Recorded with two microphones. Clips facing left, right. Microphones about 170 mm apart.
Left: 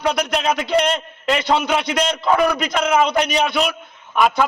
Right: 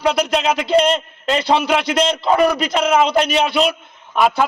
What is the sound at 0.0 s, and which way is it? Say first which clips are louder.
A man's voice: right 3 dB; 30° right (ahead or behind).